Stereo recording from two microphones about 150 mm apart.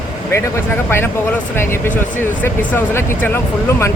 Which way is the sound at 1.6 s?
15° left (ahead or behind).